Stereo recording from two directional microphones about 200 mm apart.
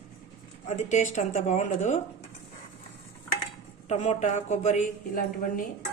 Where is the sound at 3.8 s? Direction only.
35° left (ahead or behind).